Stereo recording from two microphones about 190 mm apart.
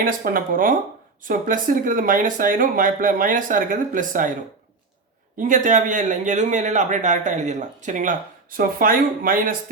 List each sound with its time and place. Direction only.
0.0 s speech: 45° right (ahead or behind)
5.4 s a man's voice: 45° right (ahead or behind)